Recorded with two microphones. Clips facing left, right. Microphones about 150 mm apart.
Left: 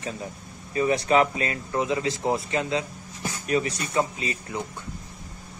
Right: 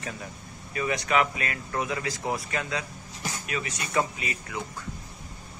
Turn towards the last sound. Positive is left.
turn(degrees=30)  # may be behind; listen again after turning